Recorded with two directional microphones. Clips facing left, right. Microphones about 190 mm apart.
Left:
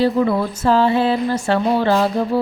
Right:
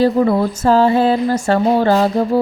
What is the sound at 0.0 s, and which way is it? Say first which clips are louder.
A woman's voice: right 3 dB; 40° right (ahead or behind).